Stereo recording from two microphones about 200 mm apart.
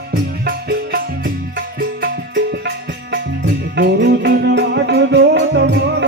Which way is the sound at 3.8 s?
60° right (ahead or behind).